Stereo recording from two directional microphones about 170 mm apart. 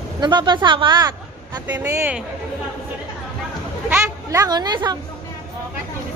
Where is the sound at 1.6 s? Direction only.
15° right (ahead or behind).